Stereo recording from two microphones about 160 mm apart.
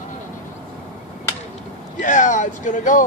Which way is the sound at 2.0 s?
50° left (ahead or behind).